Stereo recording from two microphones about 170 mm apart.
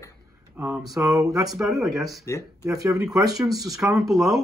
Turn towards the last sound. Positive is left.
turn(degrees=0)  # may be behind; listen again after turning